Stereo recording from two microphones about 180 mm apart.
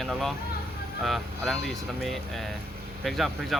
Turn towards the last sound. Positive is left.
turn(degrees=0)  # may be behind; listen again after turning